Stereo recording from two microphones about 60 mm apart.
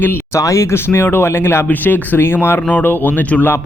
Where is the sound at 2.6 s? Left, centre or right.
Left.